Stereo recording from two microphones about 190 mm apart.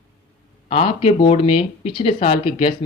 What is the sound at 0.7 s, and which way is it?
Speech, 30° left (ahead or behind).